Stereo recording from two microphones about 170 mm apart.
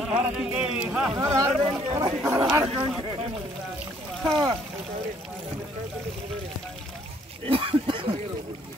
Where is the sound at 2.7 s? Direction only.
30° right (ahead or behind).